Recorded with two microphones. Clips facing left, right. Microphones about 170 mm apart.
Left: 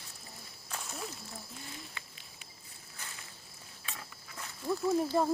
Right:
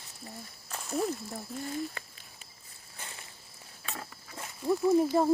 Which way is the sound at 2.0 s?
45° right (ahead or behind).